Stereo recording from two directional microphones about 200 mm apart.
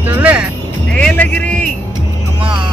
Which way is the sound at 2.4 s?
25° right (ahead or behind).